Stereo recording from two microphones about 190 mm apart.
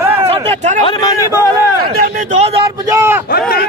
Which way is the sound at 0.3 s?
30° right (ahead or behind).